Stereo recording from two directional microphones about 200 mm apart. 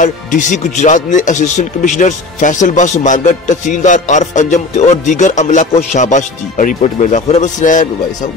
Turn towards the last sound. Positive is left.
turn(degrees=40)  # may be behind; listen again after turning